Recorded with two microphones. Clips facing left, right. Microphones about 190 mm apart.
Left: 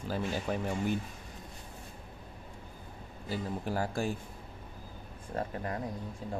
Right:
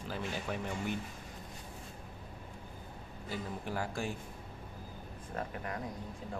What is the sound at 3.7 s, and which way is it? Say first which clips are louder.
Speech: left 5 dB; 35° left (ahead or behind).